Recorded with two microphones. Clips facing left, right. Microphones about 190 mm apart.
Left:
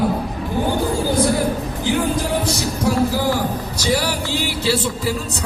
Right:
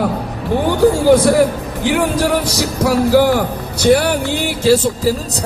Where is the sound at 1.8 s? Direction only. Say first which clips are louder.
Right 5 dB; 80° right.